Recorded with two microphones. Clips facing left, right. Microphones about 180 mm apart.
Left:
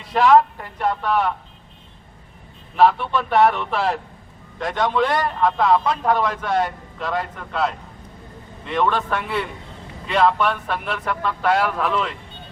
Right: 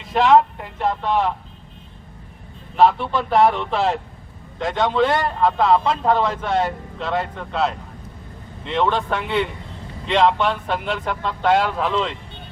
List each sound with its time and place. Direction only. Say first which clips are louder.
0.2 s a man's voice: even; 25° right (ahead or behind)
2.7 s a man's voice: even; 30° right (ahead or behind)